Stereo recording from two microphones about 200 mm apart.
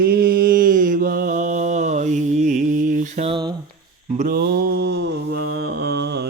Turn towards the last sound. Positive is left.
turn(degrees=-55)  # may be behind; listen again after turning